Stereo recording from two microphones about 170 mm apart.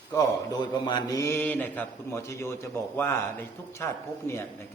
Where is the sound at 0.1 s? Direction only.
20° left (ahead or behind).